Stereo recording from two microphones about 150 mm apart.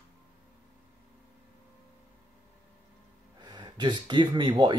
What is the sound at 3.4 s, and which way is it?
Speech, 30° right (ahead or behind).